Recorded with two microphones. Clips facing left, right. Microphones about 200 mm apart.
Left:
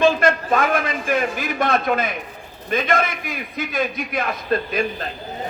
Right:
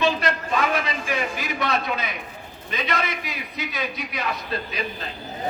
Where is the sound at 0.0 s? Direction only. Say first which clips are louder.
Left 6 dB; 50° left (ahead or behind).